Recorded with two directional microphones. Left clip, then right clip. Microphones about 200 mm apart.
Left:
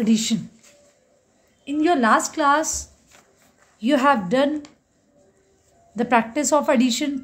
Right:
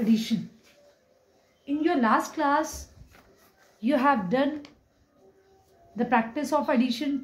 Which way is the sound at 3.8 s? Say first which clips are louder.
Left 5 dB; 35° left (ahead or behind).